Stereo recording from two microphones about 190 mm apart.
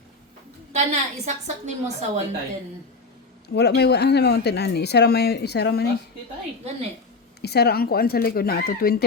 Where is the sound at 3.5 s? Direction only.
60° left (ahead or behind).